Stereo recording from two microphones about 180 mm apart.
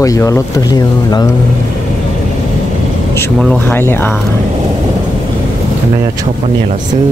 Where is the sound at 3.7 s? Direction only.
10° left (ahead or behind).